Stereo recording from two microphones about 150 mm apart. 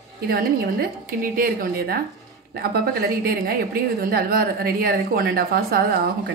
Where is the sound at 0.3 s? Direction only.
90° right.